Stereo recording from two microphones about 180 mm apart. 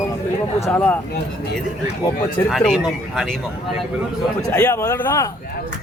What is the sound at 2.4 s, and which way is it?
Speech, 5° left (ahead or behind).